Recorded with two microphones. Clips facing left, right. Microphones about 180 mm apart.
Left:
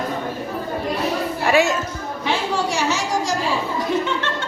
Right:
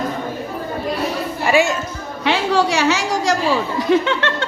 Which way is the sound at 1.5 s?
Centre (ahead or behind).